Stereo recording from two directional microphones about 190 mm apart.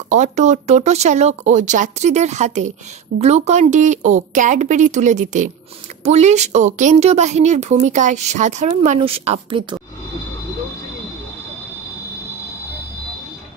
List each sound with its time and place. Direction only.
0.1 s a woman's voice: 40° right (ahead or behind)